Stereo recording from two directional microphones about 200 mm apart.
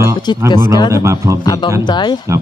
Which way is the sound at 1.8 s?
20° left (ahead or behind).